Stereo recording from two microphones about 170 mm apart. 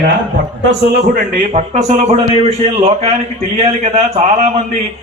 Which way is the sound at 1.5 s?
45° right (ahead or behind).